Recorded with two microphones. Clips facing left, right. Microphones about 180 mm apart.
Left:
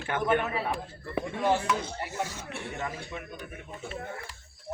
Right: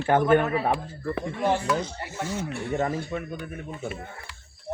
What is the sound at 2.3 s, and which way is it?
Speech, 45° right (ahead or behind).